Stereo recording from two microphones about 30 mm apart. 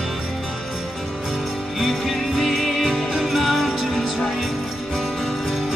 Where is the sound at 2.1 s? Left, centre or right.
Centre.